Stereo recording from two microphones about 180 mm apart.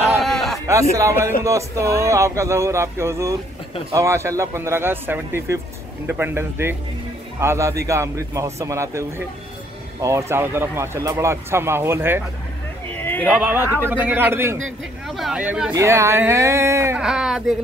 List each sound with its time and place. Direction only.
0.2 s a sound: centre (ahead or behind)
0.9 s speech: 15° right (ahead or behind)
10.0 s speech: 15° right (ahead or behind)
12.9 s a sound: 10° left (ahead or behind)
13.4 s speech: 5° right (ahead or behind)
15.0 s speech: centre (ahead or behind)
17.0 s speech: 5° right (ahead or behind)